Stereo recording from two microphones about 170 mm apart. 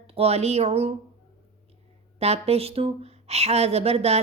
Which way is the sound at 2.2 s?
35° right (ahead or behind).